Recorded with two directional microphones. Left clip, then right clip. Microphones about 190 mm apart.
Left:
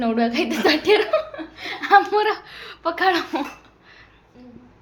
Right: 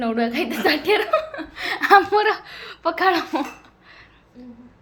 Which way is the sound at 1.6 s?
25° right (ahead or behind).